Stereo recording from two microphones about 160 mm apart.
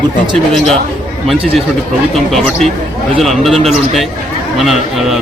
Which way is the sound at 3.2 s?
Centre (ahead or behind).